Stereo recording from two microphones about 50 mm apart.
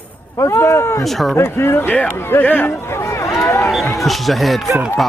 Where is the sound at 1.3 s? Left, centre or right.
Left.